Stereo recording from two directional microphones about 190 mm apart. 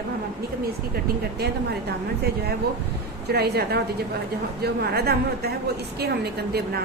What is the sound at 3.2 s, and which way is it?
A woman's voice, 55° right (ahead or behind).